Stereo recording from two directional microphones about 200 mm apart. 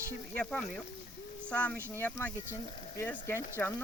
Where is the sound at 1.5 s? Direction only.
5° left (ahead or behind).